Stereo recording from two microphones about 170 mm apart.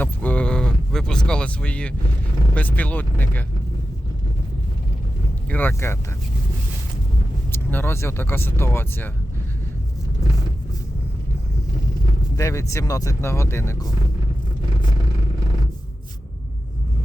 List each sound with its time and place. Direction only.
0.0 s a sound: 10° left (ahead or behind)
2.6 s speech: 10° left (ahead or behind)
5.5 s speech: 10° left (ahead or behind)
7.5 s speech: 10° left (ahead or behind)
12.4 s speech: 20° left (ahead or behind)